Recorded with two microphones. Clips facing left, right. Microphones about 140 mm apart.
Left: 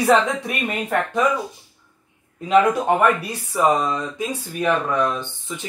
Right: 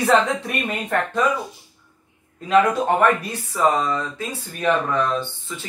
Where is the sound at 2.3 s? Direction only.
15° left (ahead or behind).